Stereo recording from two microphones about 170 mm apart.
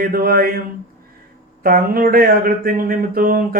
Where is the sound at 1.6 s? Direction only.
60° right (ahead or behind).